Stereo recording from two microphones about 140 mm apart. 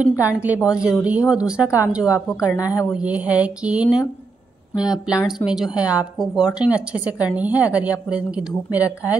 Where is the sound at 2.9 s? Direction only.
10° right (ahead or behind).